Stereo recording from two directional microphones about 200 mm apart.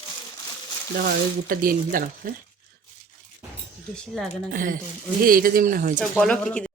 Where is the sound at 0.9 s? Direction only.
45° right (ahead or behind).